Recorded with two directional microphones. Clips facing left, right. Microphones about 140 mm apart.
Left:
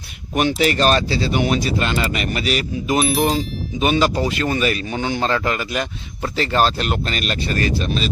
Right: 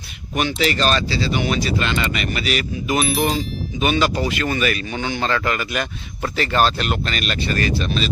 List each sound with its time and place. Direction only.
0.3 s speech: 50° left (ahead or behind)
3.0 s speech: centre (ahead or behind)
3.8 s speech: 35° left (ahead or behind)